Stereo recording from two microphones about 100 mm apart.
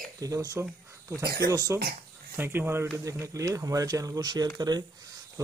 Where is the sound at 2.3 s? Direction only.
20° right (ahead or behind); by 4.8 s 45° right (ahead or behind).